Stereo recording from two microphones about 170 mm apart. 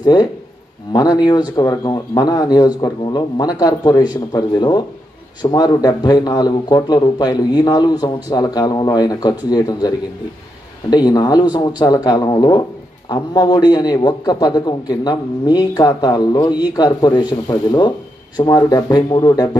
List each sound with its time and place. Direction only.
0.0 s a man's voice: 25° left (ahead or behind)